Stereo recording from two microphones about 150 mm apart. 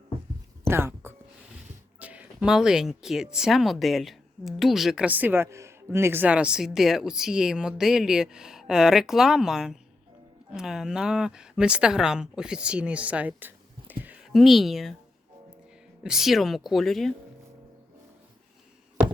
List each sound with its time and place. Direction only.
0.7 s a sound: 15° right (ahead or behind)
2.0 s speech: 10° right (ahead or behind)
16.0 s speech: centre (ahead or behind)